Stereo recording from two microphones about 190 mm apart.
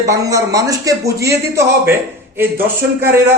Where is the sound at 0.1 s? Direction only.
15° right (ahead or behind).